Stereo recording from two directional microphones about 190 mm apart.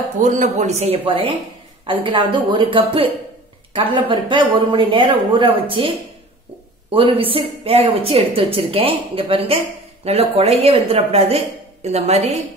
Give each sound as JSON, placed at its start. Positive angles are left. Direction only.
{"t": 0.2, "sound": "a woman's voice", "side_deg": -40}